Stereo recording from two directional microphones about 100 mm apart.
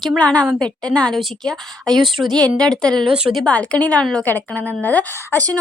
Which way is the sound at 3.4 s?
10° left (ahead or behind).